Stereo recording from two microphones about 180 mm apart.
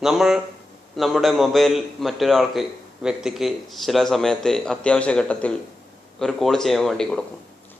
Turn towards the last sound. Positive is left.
turn(degrees=5)  # may be behind; listen again after turning